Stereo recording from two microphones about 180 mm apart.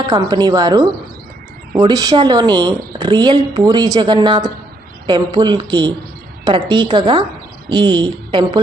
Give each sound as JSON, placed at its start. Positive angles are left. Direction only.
{"t": 0.1, "sound": "a woman's voice", "side_deg": -25}